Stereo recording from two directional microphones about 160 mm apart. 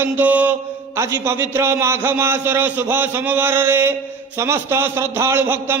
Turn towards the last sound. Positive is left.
turn(degrees=-15)  # may be behind; listen again after turning